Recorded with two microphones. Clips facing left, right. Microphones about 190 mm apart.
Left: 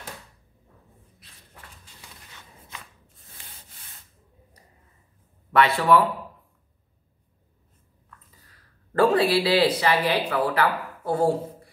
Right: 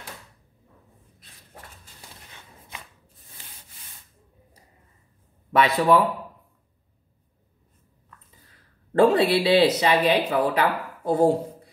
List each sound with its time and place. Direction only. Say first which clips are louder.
5.5 s speech: even; 20° right (ahead or behind)
8.9 s speech: right 2 dB; 25° right (ahead or behind)